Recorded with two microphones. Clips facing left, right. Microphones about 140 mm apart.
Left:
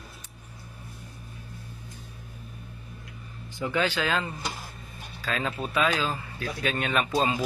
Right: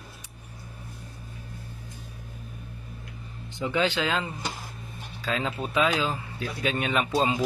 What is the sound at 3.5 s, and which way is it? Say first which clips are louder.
Speech: right 1 dB; 20° right (ahead or behind).